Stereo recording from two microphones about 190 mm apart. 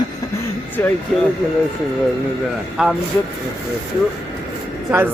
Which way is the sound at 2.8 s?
5° right (ahead or behind).